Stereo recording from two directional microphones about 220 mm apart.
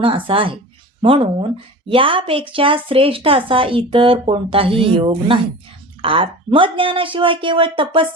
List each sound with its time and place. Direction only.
0.0 s a woman's voice: 25° right (ahead or behind)